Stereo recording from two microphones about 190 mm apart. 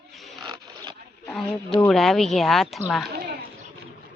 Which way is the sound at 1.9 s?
Centre (ahead or behind).